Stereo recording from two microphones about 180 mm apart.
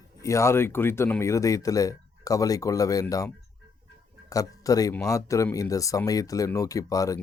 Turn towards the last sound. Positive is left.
turn(degrees=20)  # may be behind; listen again after turning